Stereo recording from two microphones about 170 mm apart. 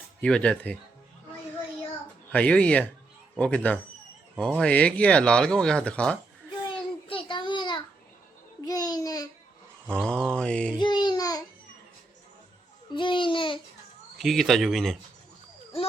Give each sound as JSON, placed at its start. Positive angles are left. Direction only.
{"t": 0.2, "sound": "speech", "side_deg": 5}
{"t": 2.3, "sound": "speech", "side_deg": 5}
{"t": 7.1, "sound": "a sound", "side_deg": 30}
{"t": 8.6, "sound": "babbling", "side_deg": 20}
{"t": 9.9, "sound": "mantra", "side_deg": 5}
{"t": 10.8, "sound": "babbling", "side_deg": 25}
{"t": 12.9, "sound": "babbling", "side_deg": 30}
{"t": 14.2, "sound": "speech", "side_deg": 0}